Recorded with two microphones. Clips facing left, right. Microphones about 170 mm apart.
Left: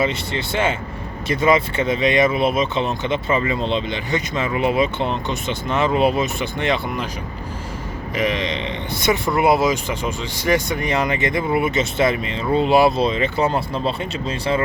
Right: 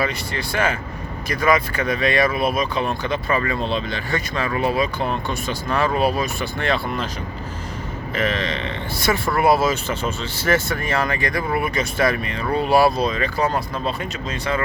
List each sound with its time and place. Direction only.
0.0 s speech: 25° left (ahead or behind)
8.1 s speech: 15° left (ahead or behind)